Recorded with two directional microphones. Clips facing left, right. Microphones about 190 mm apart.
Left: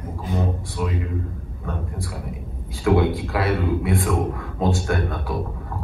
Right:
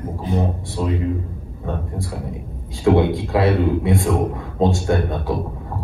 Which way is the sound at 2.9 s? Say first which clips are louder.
Right 3 dB; 25° right (ahead or behind).